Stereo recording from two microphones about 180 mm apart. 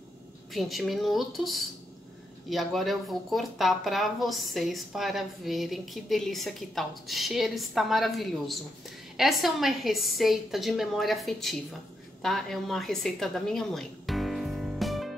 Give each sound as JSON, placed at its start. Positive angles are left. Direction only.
{"t": 0.5, "sound": "a woman's voice", "side_deg": 0}